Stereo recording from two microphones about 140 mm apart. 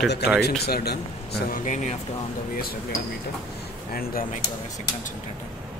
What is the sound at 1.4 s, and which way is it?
Speech, 70° left (ahead or behind).